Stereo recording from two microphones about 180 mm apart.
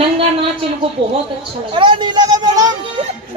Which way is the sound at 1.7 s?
25° right (ahead or behind).